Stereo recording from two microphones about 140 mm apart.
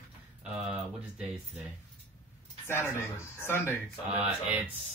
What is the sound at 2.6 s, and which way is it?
Speech, 15° left (ahead or behind).